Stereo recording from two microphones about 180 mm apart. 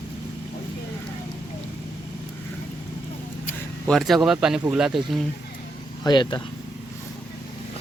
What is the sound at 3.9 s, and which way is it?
Speech, centre (ahead or behind).